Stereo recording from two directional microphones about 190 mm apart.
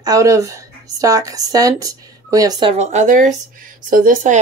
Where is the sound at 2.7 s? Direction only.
40° right (ahead or behind).